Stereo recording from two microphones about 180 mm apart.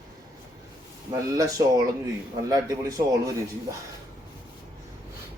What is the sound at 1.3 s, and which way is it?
Speech, 20° right (ahead or behind).